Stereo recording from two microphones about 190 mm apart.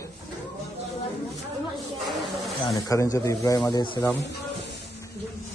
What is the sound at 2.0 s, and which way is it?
Snake, centre (ahead or behind).